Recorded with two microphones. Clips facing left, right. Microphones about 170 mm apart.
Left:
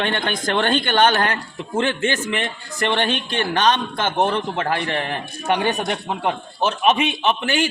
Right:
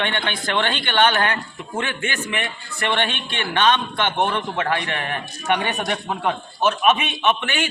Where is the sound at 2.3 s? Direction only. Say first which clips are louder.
Left 3 dB; 40° left (ahead or behind).